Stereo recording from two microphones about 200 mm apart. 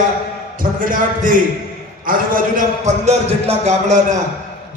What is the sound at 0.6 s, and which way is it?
A man's voice, 45° right (ahead or behind).